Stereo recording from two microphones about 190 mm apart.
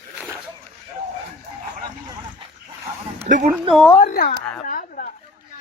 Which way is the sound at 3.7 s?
5° left (ahead or behind).